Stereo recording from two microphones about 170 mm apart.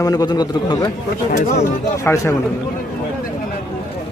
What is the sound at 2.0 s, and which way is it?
Speech, 15° left (ahead or behind).